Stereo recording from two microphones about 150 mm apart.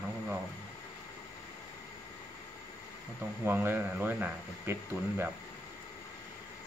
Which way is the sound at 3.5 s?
15° right (ahead or behind).